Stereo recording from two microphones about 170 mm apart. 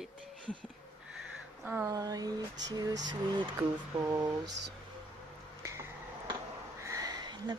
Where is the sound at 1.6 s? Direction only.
10° right (ahead or behind).